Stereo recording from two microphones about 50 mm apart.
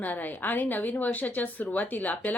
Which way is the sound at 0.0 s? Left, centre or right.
Left.